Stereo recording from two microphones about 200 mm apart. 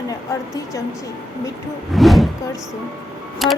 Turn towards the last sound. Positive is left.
turn(degrees=0)  # may be behind; listen again after turning